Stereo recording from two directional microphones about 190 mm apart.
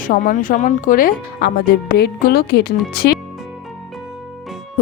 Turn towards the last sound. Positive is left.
turn(degrees=55)  # may be behind; listen again after turning